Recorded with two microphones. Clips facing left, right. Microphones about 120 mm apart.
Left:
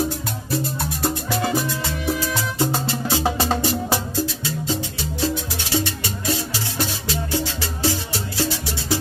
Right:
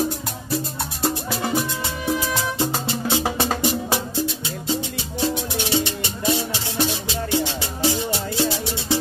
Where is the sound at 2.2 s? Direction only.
20° right (ahead or behind).